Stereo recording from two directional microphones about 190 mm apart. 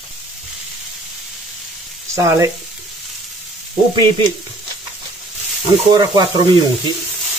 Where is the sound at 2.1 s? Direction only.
15° right (ahead or behind).